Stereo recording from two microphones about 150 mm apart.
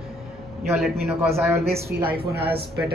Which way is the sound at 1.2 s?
15° right (ahead or behind).